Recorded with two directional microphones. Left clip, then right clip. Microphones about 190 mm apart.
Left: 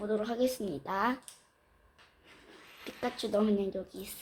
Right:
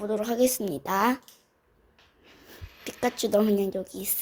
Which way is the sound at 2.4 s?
35° right (ahead or behind).